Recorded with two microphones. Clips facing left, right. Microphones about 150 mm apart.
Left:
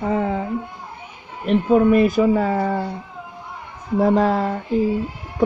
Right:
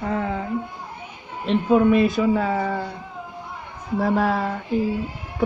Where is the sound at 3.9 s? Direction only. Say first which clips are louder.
Left 4 dB; 15° left (ahead or behind).